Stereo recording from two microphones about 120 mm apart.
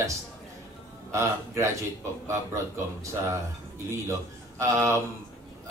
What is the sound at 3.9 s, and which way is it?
Speech, 25° right (ahead or behind).